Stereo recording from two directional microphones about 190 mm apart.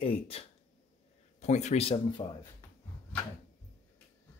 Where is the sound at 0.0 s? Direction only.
30° left (ahead or behind).